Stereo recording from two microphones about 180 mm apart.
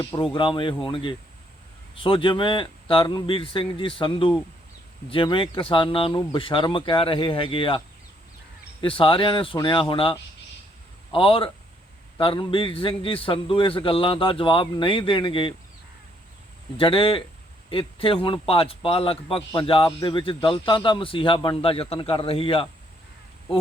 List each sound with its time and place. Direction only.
0.0 s a man's voice: 20° left (ahead or behind)
8.8 s a man's voice: 30° left (ahead or behind)
16.7 s a man's voice: 30° left (ahead or behind)